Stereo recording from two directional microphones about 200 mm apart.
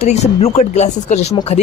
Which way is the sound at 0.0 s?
35° left (ahead or behind).